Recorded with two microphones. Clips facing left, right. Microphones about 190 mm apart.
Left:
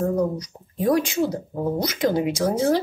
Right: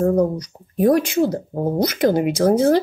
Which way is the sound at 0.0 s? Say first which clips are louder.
Right 5 dB; 55° right (ahead or behind).